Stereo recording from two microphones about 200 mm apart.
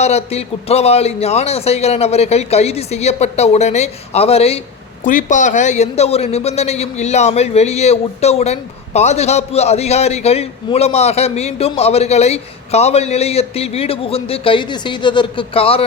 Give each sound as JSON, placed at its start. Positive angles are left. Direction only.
{"t": 0.0, "sound": "a man's voice", "side_deg": 30}